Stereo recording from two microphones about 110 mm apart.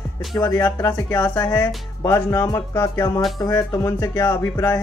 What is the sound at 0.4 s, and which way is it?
Speech, 25° left (ahead or behind).